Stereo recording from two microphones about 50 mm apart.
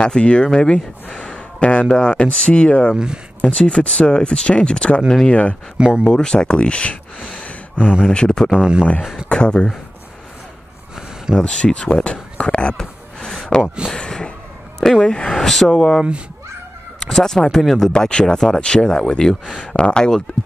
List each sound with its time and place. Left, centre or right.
0.0 s speech: centre
1.1 s a sound: centre
1.9 s speech: left
7.2 s a sound: centre
7.4 s a sound: left
8.1 s speech: centre
8.5 s speech: centre
9.3 s speech: centre
11.3 s a sound: centre
14.8 s speech: centre
15.7 s speech: centre
17.0 s speech: centre